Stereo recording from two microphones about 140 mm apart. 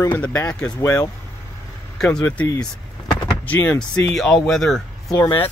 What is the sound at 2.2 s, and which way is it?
Speech, 20° left (ahead or behind).